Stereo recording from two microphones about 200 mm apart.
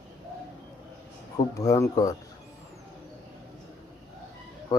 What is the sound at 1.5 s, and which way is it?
Speech, 15° left (ahead or behind).